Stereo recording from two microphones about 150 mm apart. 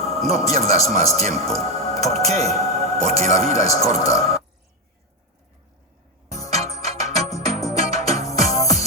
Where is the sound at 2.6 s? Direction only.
45° right (ahead or behind).